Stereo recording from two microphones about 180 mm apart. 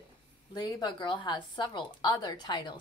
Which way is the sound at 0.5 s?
25° left (ahead or behind).